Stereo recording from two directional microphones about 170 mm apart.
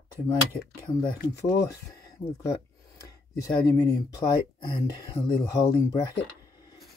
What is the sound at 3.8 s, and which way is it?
Speech, 20° left (ahead or behind).